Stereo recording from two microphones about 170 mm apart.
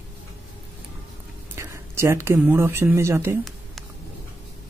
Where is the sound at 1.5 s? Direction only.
15° right (ahead or behind).